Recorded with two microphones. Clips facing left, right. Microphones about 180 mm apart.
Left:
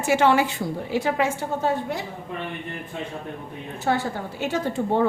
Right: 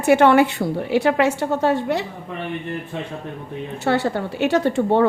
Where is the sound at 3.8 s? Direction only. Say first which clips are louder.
Right 4 dB; 75° right (ahead or behind).